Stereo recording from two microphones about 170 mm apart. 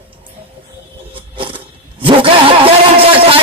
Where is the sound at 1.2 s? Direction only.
30° right (ahead or behind).